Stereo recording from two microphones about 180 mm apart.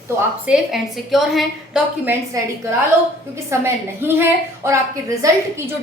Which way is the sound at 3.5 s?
15° right (ahead or behind).